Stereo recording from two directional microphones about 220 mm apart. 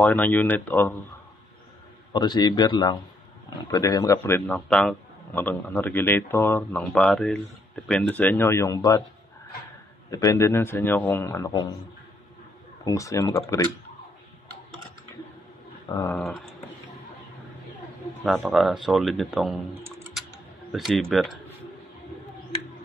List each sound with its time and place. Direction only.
0.0 s a man's voice: 10° left (ahead or behind)
2.1 s a man's voice: 20° left (ahead or behind)
10.1 s a man's voice: 15° left (ahead or behind)
12.8 s a man's voice: 15° left (ahead or behind)
15.9 s a man's voice: 10° left (ahead or behind)
18.2 s speech: centre (ahead or behind)
20.7 s speech: centre (ahead or behind)